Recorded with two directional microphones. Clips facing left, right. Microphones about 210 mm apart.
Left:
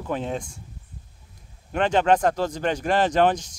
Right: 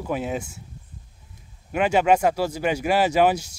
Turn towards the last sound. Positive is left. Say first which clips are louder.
# right 1 dB
turn(degrees=-10)  # may be behind; listen again after turning